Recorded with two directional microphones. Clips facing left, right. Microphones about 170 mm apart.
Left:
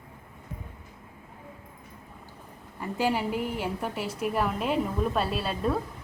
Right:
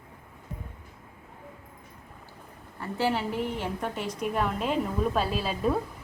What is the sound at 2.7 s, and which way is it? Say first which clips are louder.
A woman's voice: left 1 dB; 15° left (ahead or behind).